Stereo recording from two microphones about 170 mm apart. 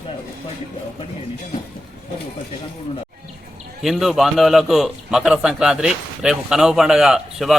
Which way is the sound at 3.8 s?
Centre (ahead or behind).